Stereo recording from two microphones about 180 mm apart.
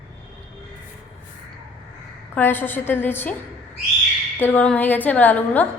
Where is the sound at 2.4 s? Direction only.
10° left (ahead or behind).